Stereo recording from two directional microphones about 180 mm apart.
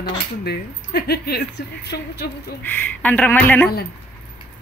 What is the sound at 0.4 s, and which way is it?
A woman's voice, 60° left (ahead or behind).